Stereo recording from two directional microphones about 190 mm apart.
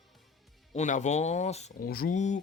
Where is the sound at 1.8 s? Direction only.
50° left (ahead or behind).